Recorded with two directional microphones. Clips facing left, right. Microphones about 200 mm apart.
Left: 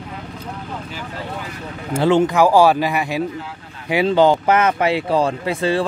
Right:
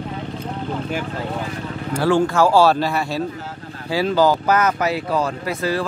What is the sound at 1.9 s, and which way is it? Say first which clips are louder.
A man's voice: left 2 dB; 20° left (ahead or behind).